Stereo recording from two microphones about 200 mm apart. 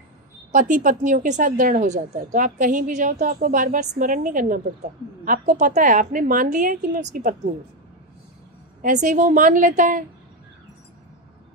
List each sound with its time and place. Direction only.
0.5 s a woman's voice: 40° right (ahead or behind)
8.8 s a woman's voice: 40° right (ahead or behind)